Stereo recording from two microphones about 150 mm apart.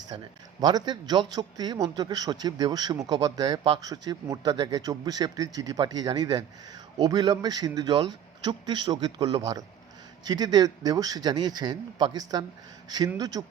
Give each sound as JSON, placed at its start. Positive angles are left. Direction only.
{"t": 0.1, "sound": "speech", "side_deg": -40}
{"t": 0.6, "sound": "a man's voice", "side_deg": -30}